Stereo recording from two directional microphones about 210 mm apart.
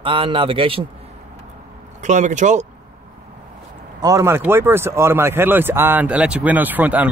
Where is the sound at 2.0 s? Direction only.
35° right (ahead or behind).